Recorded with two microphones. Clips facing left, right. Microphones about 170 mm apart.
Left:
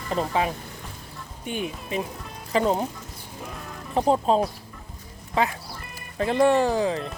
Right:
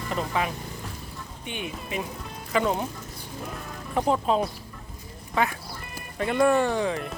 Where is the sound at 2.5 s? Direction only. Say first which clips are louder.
Left 2 dB; 35° left (ahead or behind).